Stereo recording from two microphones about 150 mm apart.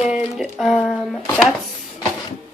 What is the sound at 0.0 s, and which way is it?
Music, centre (ahead or behind).